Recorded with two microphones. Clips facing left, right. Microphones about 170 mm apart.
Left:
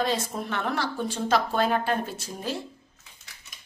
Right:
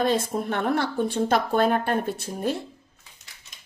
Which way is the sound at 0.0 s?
55° right (ahead or behind).